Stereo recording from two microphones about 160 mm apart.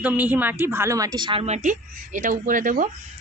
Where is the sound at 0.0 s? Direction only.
10° right (ahead or behind); by 2.9 s 55° right (ahead or behind).